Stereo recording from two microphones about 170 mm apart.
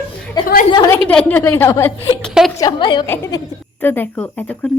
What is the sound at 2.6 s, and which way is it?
Speech, 25° left (ahead or behind).